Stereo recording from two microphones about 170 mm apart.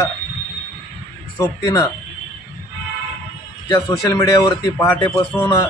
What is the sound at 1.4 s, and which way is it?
Speech, 20° left (ahead or behind).